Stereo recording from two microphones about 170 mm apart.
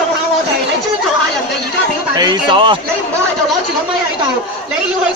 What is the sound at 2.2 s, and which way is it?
Speech, 25° right (ahead or behind).